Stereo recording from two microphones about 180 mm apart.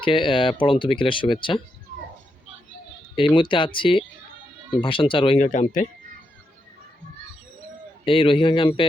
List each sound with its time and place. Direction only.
0.0 s speech: 30° left (ahead or behind)
3.2 s speech: 25° left (ahead or behind)
5.5 s speech: 45° left (ahead or behind)
8.0 s speech: 30° left (ahead or behind)